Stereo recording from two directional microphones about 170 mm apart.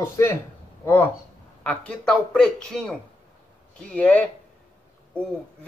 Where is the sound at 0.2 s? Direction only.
15° left (ahead or behind).